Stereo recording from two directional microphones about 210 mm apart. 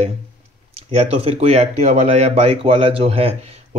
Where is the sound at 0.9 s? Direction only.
30° right (ahead or behind).